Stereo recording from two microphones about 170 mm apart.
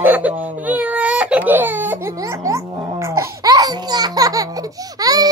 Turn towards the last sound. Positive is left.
turn(degrees=-20)  # may be behind; listen again after turning